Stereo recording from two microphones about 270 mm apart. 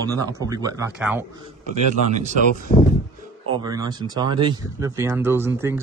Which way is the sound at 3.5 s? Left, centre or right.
Centre.